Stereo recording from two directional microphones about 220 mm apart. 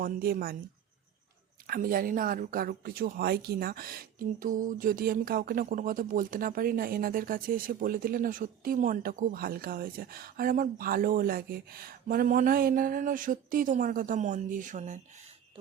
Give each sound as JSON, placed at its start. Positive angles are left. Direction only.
{"t": 0.0, "sound": "speech", "side_deg": -45}
{"t": 1.6, "sound": "speech", "side_deg": -40}